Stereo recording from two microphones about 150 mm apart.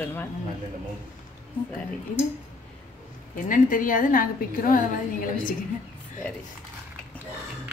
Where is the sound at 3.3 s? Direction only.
65° left (ahead or behind).